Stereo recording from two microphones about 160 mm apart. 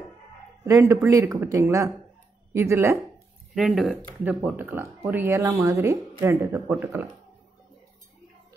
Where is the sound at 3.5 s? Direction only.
Centre (ahead or behind).